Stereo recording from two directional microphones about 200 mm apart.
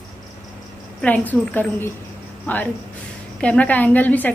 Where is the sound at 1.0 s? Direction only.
10° left (ahead or behind).